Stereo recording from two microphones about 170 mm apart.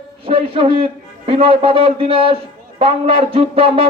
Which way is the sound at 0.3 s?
30° right (ahead or behind).